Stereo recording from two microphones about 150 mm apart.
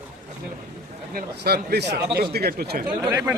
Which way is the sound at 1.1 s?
90° right.